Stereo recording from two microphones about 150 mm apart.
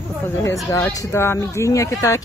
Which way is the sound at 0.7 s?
15° left (ahead or behind).